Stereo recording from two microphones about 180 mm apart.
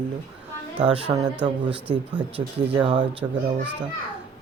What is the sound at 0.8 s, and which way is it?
Speech, 30° right (ahead or behind).